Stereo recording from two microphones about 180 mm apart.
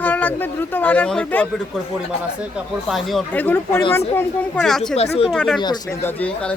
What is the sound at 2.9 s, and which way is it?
Speech, centre (ahead or behind).